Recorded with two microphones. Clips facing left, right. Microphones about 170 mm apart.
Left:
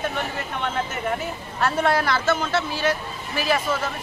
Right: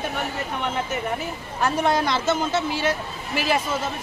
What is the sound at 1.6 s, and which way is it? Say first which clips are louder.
Speech: even; 15° right (ahead or behind).